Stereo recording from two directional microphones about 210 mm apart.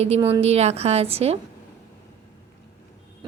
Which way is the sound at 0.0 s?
30° right (ahead or behind).